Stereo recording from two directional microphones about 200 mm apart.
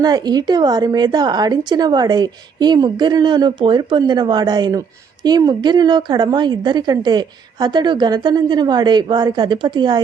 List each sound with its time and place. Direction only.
0.0 s a woman's voice: 20° right (ahead or behind)